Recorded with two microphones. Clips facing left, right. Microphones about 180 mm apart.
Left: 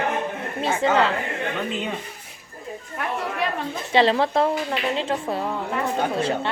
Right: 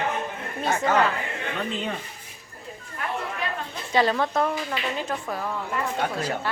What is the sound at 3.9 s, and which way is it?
A woman's voice, 25° left (ahead or behind).